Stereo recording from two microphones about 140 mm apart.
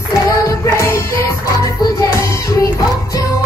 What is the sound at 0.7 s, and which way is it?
Music, 20° left (ahead or behind).